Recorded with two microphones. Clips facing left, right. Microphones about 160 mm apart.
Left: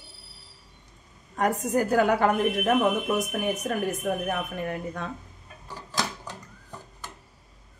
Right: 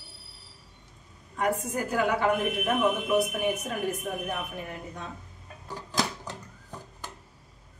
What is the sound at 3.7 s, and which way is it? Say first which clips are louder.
A woman's voice: left 4 dB; 55° left (ahead or behind).